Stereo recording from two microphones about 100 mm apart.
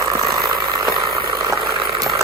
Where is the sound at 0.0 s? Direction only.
35° right (ahead or behind).